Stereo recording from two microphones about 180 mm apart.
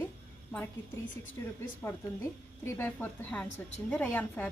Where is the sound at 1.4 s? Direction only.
15° left (ahead or behind).